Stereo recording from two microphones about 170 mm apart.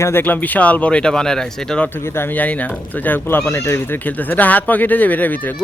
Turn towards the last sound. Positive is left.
turn(degrees=10)  # may be behind; listen again after turning